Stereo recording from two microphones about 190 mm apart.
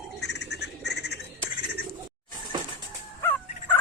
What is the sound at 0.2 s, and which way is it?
Frog, 60° left (ahead or behind).